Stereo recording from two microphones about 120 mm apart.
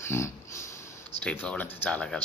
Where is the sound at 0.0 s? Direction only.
20° left (ahead or behind).